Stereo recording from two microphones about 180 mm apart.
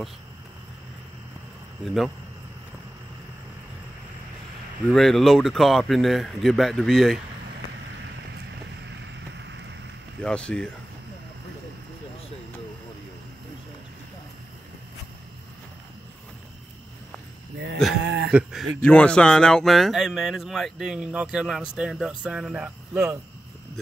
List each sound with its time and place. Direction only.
1.9 s speech: centre (ahead or behind)
4.9 s speech: centre (ahead or behind)
10.2 s speech: 5° left (ahead or behind)
18.0 s a sound: 75° right (ahead or behind)
18.3 s speech: centre (ahead or behind)